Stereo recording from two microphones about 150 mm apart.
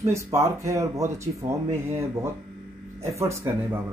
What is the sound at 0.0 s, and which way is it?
Speech, 20° right (ahead or behind).